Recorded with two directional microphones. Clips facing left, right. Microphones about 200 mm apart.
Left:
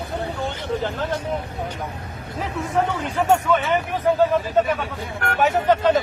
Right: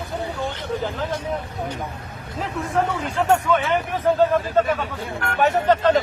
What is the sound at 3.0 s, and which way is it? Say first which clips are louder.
Speech: even; 5° left (ahead or behind).